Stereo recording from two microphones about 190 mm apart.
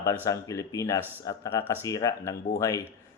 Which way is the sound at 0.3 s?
15° left (ahead or behind).